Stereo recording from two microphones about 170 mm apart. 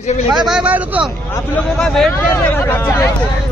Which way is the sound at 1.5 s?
5° left (ahead or behind).